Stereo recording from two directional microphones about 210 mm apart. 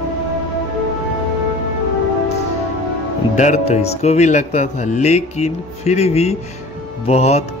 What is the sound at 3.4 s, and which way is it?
Speech, 35° left (ahead or behind).